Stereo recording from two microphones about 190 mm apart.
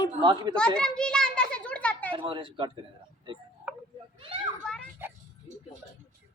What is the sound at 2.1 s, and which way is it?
Speech, 25° right (ahead or behind).